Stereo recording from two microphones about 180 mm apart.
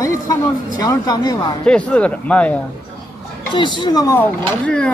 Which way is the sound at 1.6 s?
5° left (ahead or behind).